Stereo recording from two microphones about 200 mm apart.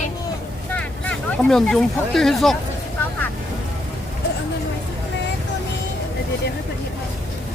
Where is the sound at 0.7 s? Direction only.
5° left (ahead or behind).